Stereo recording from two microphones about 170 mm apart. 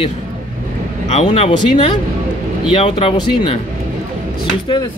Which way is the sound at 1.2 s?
35° left (ahead or behind).